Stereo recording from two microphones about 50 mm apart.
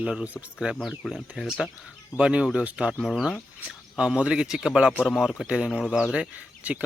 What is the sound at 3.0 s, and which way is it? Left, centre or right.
Speech, centre.